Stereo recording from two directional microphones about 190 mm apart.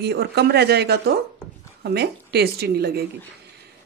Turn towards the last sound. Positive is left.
turn(degrees=-55)  # may be behind; listen again after turning